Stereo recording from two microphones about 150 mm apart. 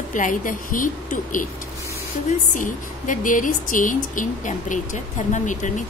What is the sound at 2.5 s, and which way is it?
Speech, 60° left (ahead or behind).